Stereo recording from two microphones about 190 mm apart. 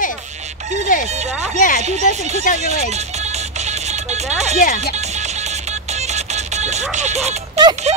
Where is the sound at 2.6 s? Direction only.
35° right (ahead or behind).